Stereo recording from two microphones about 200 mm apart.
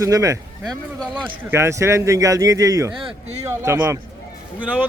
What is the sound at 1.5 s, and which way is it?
Speech, 15° right (ahead or behind).